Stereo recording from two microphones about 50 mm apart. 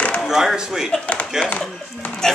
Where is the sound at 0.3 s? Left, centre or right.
Centre.